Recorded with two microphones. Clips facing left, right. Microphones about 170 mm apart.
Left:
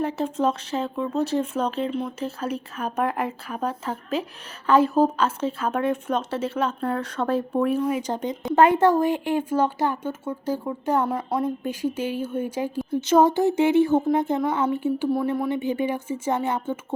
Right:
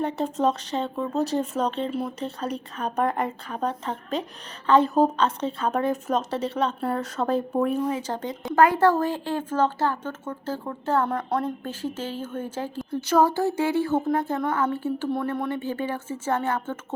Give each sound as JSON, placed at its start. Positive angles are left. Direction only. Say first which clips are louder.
{"t": 0.2, "sound": "speech", "louder": "even", "side_deg": 0}
{"t": 7.9, "sound": "a woman's voice", "louder": "left 3 dB", "side_deg": 15}